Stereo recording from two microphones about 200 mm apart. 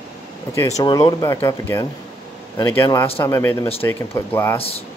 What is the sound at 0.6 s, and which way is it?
Speech, 15° left (ahead or behind).